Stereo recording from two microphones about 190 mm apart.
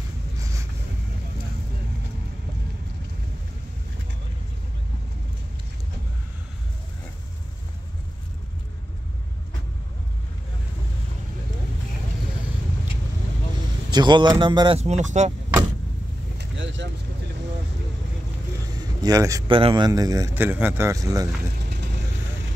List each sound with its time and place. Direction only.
13.8 s speech: 25° right (ahead or behind)
14.8 s speech: 35° right (ahead or behind)
16.3 s vehicle: 70° right (ahead or behind)
18.8 s a man's voice: 20° right (ahead or behind)